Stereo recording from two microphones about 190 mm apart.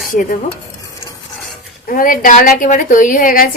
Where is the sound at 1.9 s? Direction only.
45° left (ahead or behind).